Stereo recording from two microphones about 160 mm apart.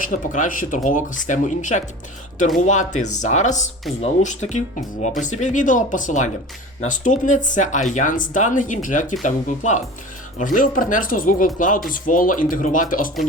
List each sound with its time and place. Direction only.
0.0 s speech: 55° left (ahead or behind)